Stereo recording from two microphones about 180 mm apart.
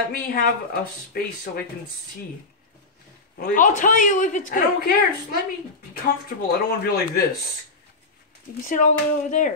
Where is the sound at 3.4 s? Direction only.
45° left (ahead or behind).